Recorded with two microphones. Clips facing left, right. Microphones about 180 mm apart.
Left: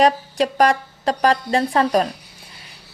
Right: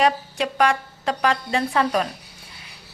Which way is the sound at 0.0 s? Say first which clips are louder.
Left 4 dB; 35° left (ahead or behind).